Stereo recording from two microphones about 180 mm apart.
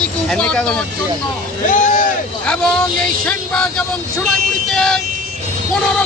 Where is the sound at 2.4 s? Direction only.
5° left (ahead or behind).